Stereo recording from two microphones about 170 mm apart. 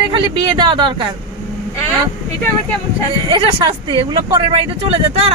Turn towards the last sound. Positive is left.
turn(degrees=-35)  # may be behind; listen again after turning